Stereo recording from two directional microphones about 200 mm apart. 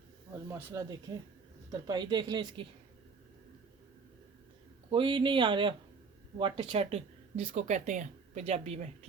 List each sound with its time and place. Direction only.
0.5 s speech: 15° right (ahead or behind)
4.9 s speech: 25° right (ahead or behind)